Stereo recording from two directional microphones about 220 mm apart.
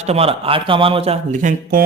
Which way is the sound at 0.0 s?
30° right (ahead or behind).